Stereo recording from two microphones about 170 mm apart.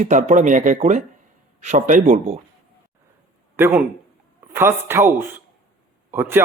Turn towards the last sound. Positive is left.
turn(degrees=-15)  # may be behind; listen again after turning